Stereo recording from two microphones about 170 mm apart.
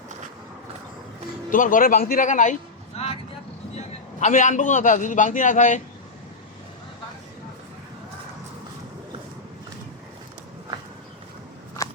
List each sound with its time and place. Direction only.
1.5 s speech: 50° left (ahead or behind)
3.0 s vehicle: 35° left (ahead or behind)
3.8 s a man's voice: 45° left (ahead or behind)